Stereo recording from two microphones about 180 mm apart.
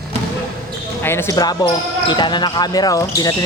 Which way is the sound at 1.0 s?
15° left (ahead or behind).